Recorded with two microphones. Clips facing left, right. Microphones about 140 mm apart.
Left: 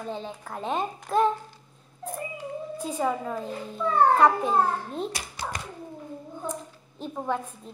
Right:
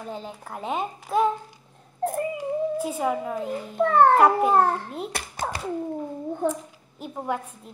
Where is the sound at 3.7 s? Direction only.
65° right (ahead or behind).